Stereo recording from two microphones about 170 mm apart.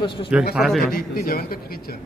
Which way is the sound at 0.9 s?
65° left (ahead or behind).